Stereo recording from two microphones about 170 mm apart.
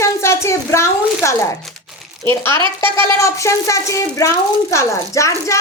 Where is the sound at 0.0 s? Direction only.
15° left (ahead or behind).